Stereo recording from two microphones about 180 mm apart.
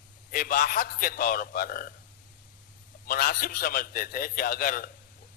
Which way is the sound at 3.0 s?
55° left (ahead or behind).